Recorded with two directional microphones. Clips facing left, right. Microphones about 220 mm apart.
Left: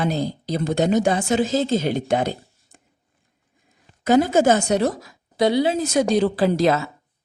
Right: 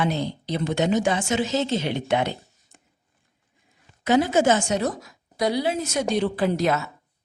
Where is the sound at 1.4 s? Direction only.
50° left (ahead or behind).